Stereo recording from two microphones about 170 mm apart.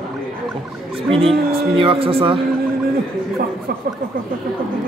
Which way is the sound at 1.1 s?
35° right (ahead or behind).